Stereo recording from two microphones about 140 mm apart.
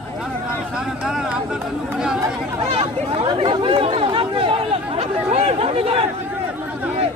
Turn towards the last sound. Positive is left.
turn(degrees=-45)  # may be behind; listen again after turning